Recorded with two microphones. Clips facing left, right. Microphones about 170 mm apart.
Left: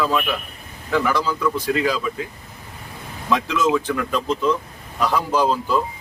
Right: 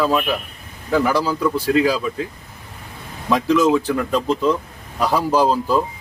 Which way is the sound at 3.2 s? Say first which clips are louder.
Right 4 dB; 35° right (ahead or behind).